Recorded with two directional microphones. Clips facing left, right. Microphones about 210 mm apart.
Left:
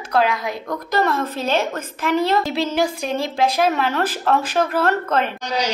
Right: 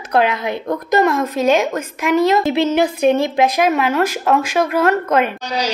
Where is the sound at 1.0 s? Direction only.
15° right (ahead or behind).